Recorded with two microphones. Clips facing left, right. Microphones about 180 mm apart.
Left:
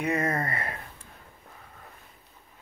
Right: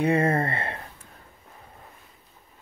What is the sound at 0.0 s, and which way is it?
Speech, 30° right (ahead or behind).